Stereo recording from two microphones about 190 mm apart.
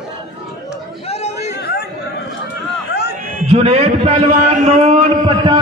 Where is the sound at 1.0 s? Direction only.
35° left (ahead or behind).